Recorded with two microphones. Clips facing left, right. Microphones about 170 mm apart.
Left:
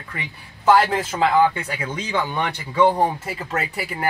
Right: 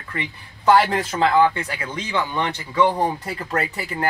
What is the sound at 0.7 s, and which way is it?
Speech, 5° left (ahead or behind).